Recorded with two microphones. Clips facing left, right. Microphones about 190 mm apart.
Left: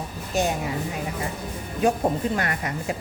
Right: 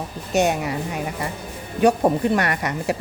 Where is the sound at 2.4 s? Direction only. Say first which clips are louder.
Right 4 dB; 70° right (ahead or behind).